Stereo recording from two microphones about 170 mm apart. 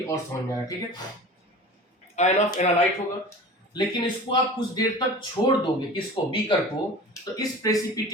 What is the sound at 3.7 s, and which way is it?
A man's voice, 25° left (ahead or behind).